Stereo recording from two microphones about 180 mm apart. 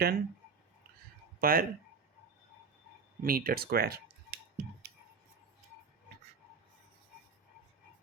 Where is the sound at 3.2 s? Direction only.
55° right (ahead or behind).